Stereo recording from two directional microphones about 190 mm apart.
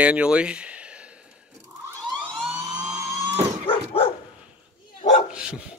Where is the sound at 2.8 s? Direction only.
20° right (ahead or behind).